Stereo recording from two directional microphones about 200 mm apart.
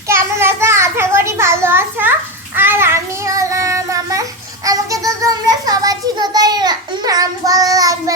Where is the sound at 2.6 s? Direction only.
10° right (ahead or behind).